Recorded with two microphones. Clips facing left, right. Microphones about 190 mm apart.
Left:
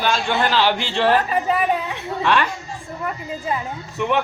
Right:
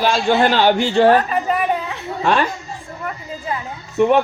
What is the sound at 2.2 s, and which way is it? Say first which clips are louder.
Speech: right 2 dB; 40° right (ahead or behind).